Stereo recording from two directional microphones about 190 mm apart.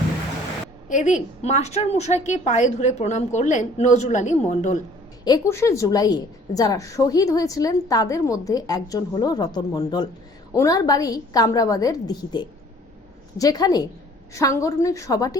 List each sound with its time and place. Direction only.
0.9 s a woman's voice: 40° left (ahead or behind)
5.2 s a woman's voice: 20° left (ahead or behind)